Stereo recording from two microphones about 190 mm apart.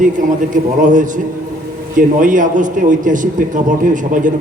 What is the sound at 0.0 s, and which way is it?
A man's voice, 45° right (ahead or behind).